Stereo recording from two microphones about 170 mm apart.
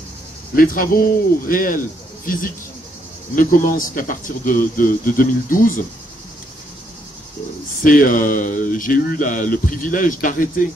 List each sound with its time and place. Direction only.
0.6 s a man's voice: 55° left (ahead or behind)
7.8 s speech: 50° left (ahead or behind)